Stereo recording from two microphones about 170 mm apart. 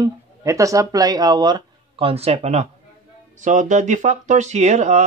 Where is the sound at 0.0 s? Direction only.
20° right (ahead or behind).